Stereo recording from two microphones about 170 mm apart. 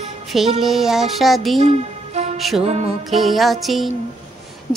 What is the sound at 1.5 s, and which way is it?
Music, 40° right (ahead or behind).